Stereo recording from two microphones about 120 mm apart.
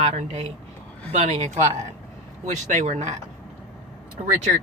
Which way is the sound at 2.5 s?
85° right.